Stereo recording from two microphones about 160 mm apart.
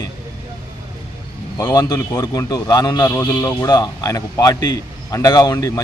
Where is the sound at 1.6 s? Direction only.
20° left (ahead or behind).